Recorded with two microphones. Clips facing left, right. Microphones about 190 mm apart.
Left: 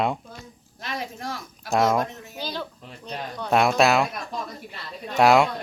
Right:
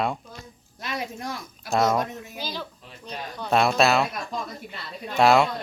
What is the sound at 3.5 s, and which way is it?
Speech, 15° left (ahead or behind).